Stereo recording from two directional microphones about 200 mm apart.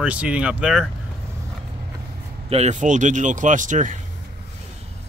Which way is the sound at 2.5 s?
35° right (ahead or behind).